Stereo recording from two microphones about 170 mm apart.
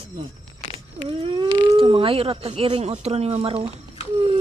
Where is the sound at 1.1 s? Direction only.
30° right (ahead or behind).